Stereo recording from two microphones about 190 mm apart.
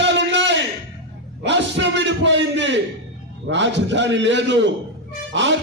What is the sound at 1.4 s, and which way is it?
A man's voice, 70° right (ahead or behind).